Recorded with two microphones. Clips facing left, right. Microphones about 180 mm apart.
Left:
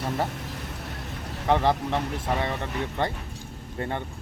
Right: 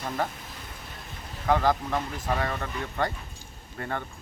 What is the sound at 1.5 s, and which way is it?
Speech, 25° left (ahead or behind).